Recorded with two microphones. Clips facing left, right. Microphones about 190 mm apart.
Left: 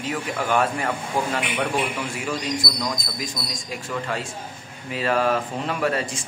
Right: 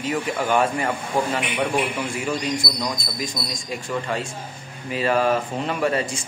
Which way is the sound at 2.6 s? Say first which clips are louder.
Right 1 dB; 20° right (ahead or behind).